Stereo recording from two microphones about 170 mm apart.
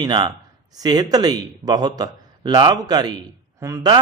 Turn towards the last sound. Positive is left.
turn(degrees=-20)  # may be behind; listen again after turning